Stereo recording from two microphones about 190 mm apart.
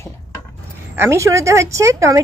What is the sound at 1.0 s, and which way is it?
Speech, 15° right (ahead or behind).